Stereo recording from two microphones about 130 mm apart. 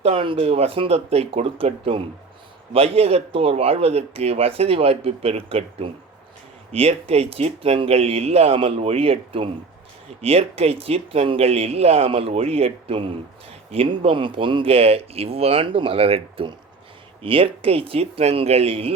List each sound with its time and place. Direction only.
0.0 s speech: 45° right (ahead or behind)